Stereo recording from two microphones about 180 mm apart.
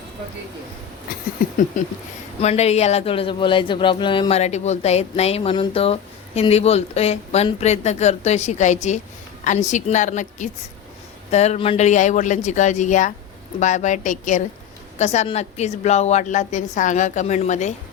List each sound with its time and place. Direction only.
1.7 s a woman's voice: 45° left (ahead or behind)